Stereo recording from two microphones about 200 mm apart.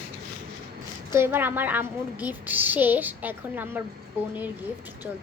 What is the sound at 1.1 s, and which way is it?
A woman's voice, 10° right (ahead or behind).